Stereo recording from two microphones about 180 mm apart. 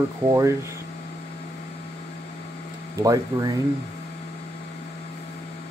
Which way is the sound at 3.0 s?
20° right (ahead or behind).